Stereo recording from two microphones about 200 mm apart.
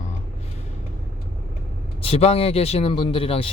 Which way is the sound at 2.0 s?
30° left (ahead or behind).